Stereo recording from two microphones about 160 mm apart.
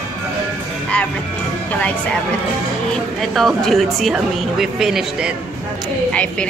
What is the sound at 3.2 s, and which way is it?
A woman's voice, centre (ahead or behind).